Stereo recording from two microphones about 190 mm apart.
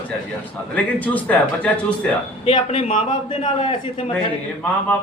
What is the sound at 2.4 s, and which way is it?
A man's voice, 30° left (ahead or behind).